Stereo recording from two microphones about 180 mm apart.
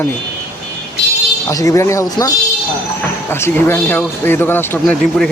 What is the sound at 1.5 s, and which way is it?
A man's voice, 20° left (ahead or behind).